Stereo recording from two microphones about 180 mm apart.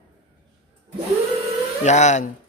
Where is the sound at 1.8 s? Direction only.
40° left (ahead or behind).